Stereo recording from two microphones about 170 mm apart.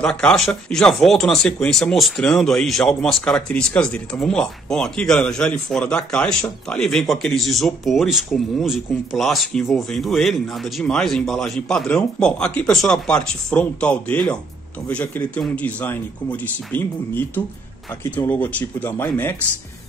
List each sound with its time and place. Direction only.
0.0 s speech: 5° left (ahead or behind)